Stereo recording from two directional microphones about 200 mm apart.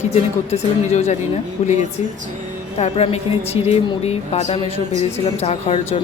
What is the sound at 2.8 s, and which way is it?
A woman's voice, 30° left (ahead or behind).